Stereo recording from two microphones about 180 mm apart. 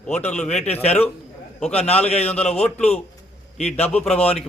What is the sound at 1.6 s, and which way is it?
Speech, 35° left (ahead or behind).